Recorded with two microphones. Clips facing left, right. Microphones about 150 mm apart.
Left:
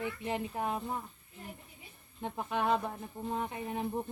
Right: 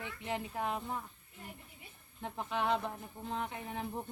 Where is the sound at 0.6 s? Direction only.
5° left (ahead or behind).